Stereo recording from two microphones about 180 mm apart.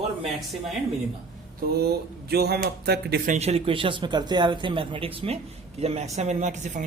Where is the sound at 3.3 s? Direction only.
35° right (ahead or behind).